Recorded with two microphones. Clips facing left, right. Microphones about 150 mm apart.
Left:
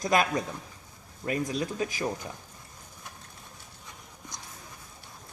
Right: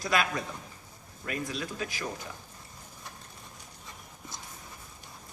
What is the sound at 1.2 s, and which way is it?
Speech, 20° left (ahead or behind).